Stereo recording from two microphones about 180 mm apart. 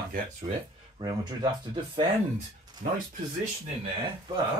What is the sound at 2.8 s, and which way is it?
Speech, 50° right (ahead or behind).